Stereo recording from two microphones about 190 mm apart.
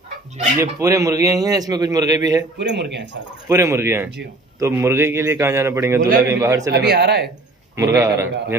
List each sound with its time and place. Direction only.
0.6 s a man's voice: 15° right (ahead or behind)
2.6 s speech: 65° right (ahead or behind)
3.4 s a man's voice: 15° right (ahead or behind)
6.7 s speech: 60° right (ahead or behind)
7.7 s a man's voice: 15° right (ahead or behind)